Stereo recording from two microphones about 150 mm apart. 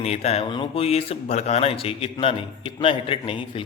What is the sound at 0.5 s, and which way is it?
A man's voice, 35° left (ahead or behind).